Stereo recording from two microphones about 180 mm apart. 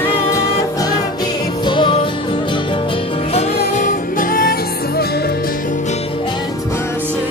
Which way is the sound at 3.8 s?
50° left (ahead or behind).